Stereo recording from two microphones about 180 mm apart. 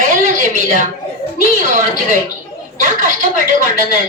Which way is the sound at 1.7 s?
45° right (ahead or behind).